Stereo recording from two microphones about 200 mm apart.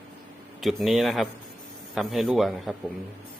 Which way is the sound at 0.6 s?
Centre (ahead or behind).